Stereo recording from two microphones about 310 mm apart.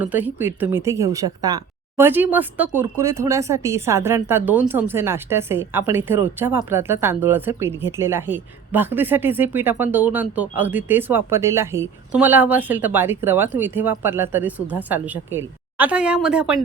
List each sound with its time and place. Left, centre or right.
0.0 s speech: centre